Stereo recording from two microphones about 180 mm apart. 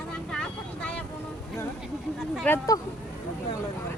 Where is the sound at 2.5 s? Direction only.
20° left (ahead or behind).